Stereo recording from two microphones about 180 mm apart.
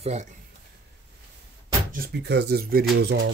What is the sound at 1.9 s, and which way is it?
Speech, 60° right (ahead or behind).